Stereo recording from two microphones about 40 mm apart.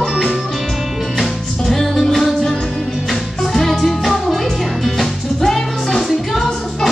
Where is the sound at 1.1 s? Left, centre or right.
Centre.